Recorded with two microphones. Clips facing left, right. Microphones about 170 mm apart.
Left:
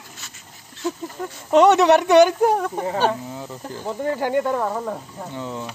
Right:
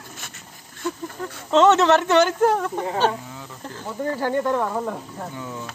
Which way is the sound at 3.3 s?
25° left (ahead or behind).